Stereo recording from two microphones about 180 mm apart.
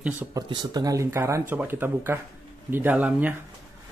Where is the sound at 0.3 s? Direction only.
20° right (ahead or behind).